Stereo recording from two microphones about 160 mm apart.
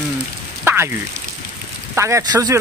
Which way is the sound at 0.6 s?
15° right (ahead or behind).